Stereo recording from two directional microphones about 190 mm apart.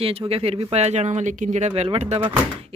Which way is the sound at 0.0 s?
30° right (ahead or behind).